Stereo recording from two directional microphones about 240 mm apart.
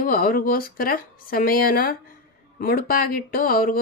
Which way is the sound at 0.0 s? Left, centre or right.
Left.